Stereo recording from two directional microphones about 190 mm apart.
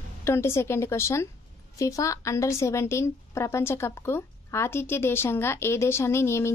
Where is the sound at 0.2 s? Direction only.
15° left (ahead or behind).